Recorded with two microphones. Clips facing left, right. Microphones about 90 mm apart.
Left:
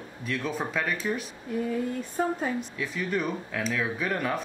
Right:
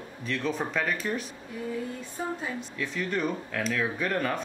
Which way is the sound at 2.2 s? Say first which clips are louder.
Left 6 dB; 55° left (ahead or behind).